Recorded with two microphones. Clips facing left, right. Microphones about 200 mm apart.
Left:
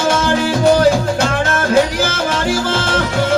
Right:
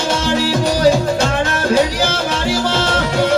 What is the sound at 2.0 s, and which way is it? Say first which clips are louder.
Music: left 1 dB; 50° left (ahead or behind).